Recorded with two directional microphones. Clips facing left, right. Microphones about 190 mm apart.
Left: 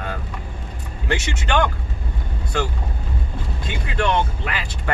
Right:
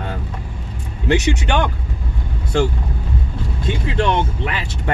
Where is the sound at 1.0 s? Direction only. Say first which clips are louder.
Right 7 dB; 20° right (ahead or behind).